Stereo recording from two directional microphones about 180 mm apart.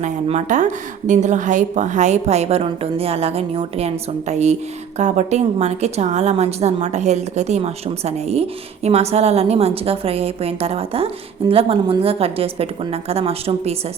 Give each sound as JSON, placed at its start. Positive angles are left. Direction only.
{"t": 0.0, "sound": "a woman's voice", "side_deg": -40}